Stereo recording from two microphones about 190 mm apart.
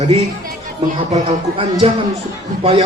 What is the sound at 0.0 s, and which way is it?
Speech, 40° right (ahead or behind).